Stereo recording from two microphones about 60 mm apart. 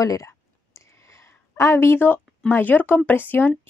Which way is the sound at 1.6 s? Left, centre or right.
Left.